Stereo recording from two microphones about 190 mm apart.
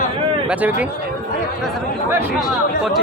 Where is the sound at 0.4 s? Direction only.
5° right (ahead or behind).